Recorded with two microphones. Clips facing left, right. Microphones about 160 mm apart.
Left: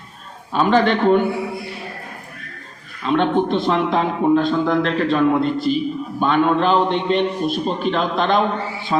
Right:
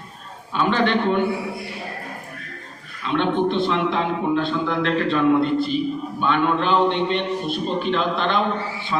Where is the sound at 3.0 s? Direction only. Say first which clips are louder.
Left 3 dB; 40° left (ahead or behind).